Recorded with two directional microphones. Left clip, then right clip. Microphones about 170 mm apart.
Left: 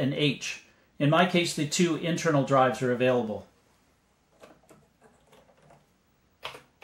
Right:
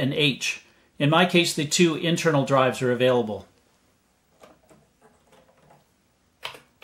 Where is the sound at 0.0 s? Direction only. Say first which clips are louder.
Right 5 dB; 40° right (ahead or behind).